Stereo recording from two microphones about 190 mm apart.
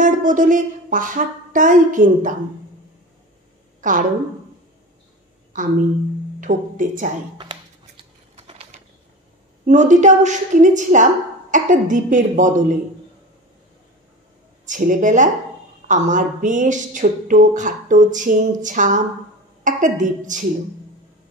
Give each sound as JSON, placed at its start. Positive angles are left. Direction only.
{"t": 0.0, "sound": "speech", "side_deg": -45}
{"t": 3.8, "sound": "speech", "side_deg": -45}
{"t": 5.5, "sound": "a woman's voice", "side_deg": -45}
{"t": 7.8, "sound": "a sound", "side_deg": -30}
{"t": 9.7, "sound": "speech", "side_deg": -40}
{"t": 14.7, "sound": "speech", "side_deg": -45}